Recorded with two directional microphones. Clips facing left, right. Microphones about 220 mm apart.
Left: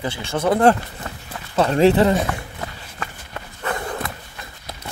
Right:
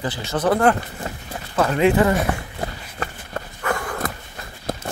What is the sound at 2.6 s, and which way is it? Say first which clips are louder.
Run: right 3 dB; 40° right (ahead or behind).